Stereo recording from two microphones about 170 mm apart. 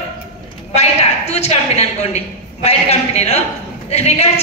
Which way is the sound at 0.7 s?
40° left (ahead or behind).